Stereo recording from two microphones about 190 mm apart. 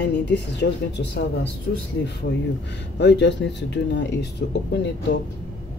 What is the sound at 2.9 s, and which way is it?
Speech, 65° left (ahead or behind).